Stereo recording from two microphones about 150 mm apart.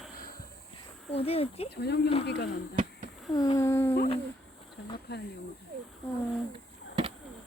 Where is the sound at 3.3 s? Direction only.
25° left (ahead or behind).